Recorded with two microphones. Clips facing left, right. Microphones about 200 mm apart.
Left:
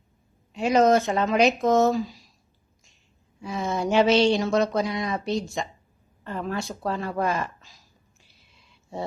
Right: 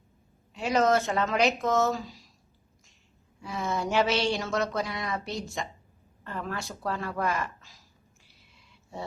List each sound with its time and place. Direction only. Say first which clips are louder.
0.5 s speech: left 5 dB; 20° left (ahead or behind)
3.4 s speech: left 4 dB; 20° left (ahead or behind)